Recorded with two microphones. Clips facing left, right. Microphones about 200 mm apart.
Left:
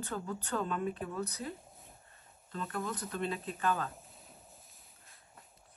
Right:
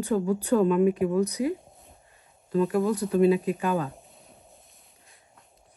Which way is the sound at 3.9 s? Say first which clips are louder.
Right 4 dB; centre (ahead or behind).